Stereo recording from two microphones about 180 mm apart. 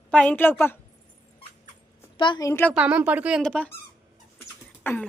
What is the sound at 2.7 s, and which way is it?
Speech, 5° right (ahead or behind).